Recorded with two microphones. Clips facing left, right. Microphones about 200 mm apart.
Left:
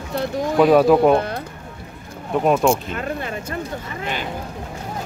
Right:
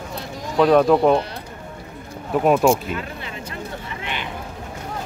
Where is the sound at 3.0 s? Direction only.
50° left (ahead or behind).